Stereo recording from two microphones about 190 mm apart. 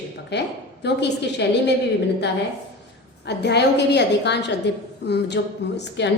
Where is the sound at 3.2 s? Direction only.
60° left (ahead or behind).